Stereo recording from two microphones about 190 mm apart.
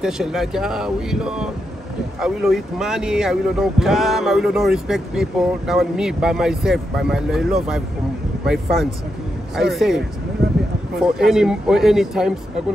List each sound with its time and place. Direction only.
0.0 s speech: centre (ahead or behind)
9.6 s speech: centre (ahead or behind)